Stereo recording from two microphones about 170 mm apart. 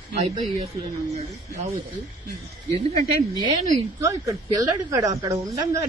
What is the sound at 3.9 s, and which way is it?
A woman's voice, 20° right (ahead or behind).